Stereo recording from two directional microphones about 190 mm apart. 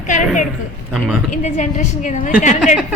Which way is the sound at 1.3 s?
40° left (ahead or behind).